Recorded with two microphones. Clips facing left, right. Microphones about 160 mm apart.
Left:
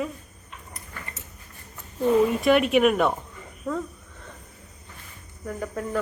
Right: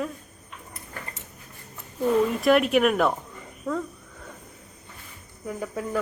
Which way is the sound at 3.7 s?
Centre (ahead or behind).